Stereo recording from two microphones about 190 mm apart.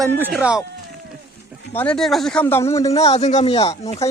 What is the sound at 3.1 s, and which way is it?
Speech, 35° left (ahead or behind).